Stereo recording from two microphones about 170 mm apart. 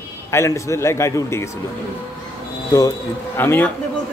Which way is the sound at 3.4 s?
10° left (ahead or behind).